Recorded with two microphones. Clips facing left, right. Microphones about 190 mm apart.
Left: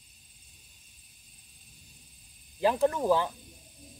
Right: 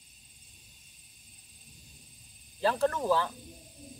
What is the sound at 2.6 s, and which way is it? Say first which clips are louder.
Speech: left 3 dB; 15° left (ahead or behind).